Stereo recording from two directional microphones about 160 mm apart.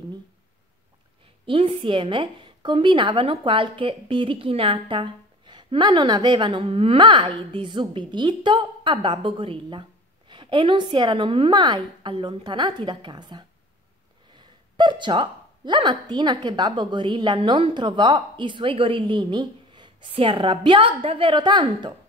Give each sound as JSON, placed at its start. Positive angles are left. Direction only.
{"t": 1.4, "sound": "a woman's voice", "side_deg": -35}
{"t": 14.8, "sound": "a woman's voice", "side_deg": -30}